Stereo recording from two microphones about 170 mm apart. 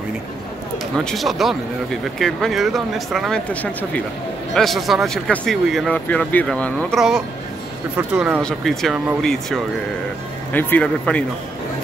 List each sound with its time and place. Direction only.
0.9 s speech: centre (ahead or behind)